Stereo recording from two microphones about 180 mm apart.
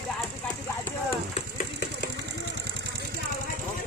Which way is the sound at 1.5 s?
60° left (ahead or behind).